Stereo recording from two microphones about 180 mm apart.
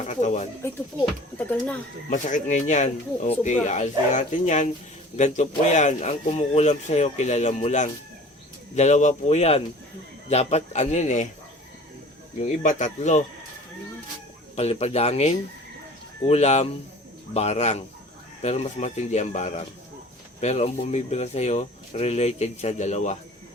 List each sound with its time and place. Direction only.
0.0 s speech: 40° left (ahead or behind)
2.0 s speech: 45° left (ahead or behind)
12.4 s speech: 45° left (ahead or behind)
14.5 s speech: 35° left (ahead or behind)